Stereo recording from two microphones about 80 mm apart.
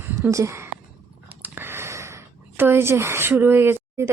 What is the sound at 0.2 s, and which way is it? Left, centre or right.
Speech, right.